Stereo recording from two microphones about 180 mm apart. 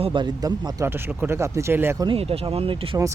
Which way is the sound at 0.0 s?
25° right (ahead or behind).